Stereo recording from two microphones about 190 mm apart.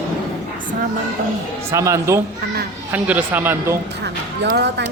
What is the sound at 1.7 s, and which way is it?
Speech, 15° right (ahead or behind).